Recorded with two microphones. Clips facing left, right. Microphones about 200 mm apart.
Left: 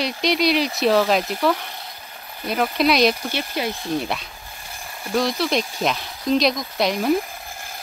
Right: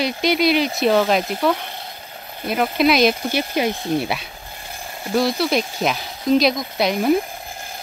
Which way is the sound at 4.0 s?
5° right (ahead or behind).